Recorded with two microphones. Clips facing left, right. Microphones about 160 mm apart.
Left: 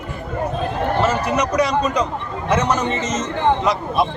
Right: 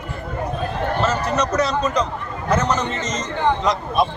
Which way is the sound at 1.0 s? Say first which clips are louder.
Left 1 dB; 10° left (ahead or behind).